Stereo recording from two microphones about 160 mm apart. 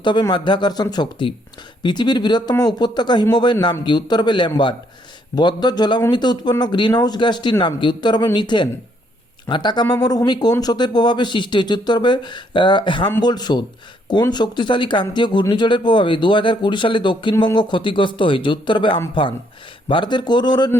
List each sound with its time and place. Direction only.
0.0 s speech: 30° left (ahead or behind)